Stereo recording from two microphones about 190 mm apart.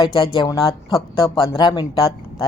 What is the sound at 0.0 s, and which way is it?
Speech, 25° left (ahead or behind).